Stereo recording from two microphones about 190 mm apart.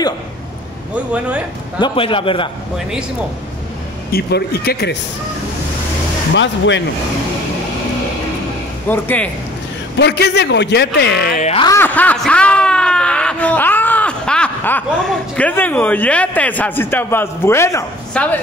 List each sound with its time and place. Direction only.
0.9 s speech: 5° right (ahead or behind)
1.8 s a man's voice: 25° left (ahead or behind)
4.1 s a man's voice: 55° left (ahead or behind)
6.3 s speech: 70° left (ahead or behind)
8.8 s speech: 10° left (ahead or behind)
9.9 s a man's voice: 65° left (ahead or behind)
11.3 s speech: 35° left (ahead or behind)
11.6 s speech: 15° left (ahead or behind)